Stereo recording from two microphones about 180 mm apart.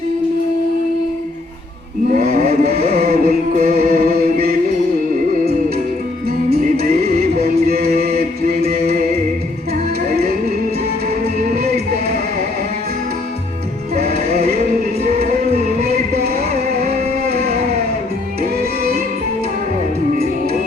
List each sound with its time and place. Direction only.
2.0 s a sound: 55° right (ahead or behind)
2.9 s music: 55° right (ahead or behind)
6.2 s music: 60° right (ahead or behind)
15.0 s music: 55° right (ahead or behind)
18.6 s music: 55° right (ahead or behind)